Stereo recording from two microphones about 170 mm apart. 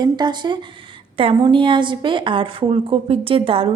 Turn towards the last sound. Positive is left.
turn(degrees=-35)  # may be behind; listen again after turning